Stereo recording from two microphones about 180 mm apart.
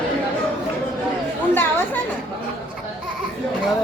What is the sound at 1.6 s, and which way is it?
Speech, 10° left (ahead or behind).